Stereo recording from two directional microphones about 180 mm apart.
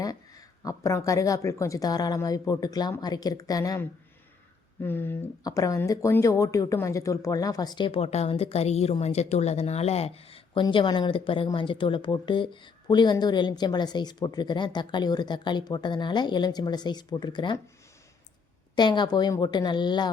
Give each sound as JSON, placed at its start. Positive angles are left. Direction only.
{"t": 0.0, "sound": "speech", "side_deg": 20}
{"t": 18.8, "sound": "speech", "side_deg": 25}